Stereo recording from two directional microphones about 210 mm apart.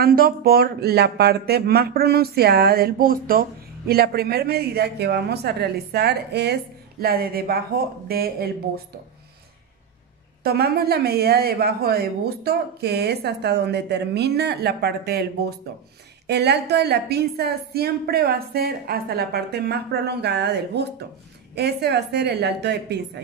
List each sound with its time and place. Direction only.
0.0 s speech: 45° right (ahead or behind)
10.4 s speech: 50° right (ahead or behind)
16.3 s speech: 50° right (ahead or behind)